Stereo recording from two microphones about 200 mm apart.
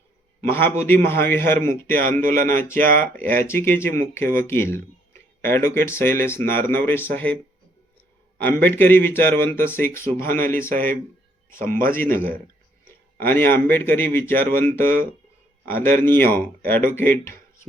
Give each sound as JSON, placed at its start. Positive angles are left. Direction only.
{"t": 0.5, "sound": "speech", "side_deg": 10}
{"t": 2.2, "sound": "speech", "side_deg": -45}
{"t": 2.5, "sound": "speech", "side_deg": 10}
{"t": 8.4, "sound": "speech", "side_deg": 10}